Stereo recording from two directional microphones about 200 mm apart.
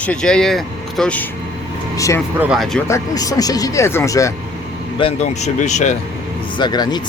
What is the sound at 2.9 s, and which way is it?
Speech, 15° left (ahead or behind).